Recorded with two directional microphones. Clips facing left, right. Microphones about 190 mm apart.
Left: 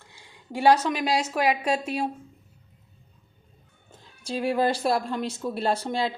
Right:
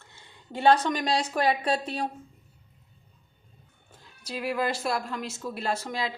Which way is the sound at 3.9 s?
25° left (ahead or behind).